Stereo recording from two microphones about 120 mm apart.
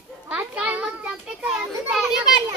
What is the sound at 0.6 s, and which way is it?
Children playing, 10° right (ahead or behind).